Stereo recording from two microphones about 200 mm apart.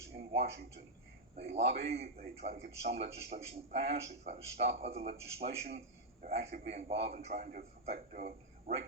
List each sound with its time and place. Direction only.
0.2 s a man's voice: 30° right (ahead or behind)